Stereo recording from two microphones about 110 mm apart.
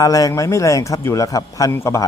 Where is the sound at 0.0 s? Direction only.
30° left (ahead or behind).